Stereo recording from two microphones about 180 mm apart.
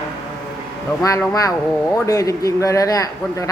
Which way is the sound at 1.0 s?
20° left (ahead or behind).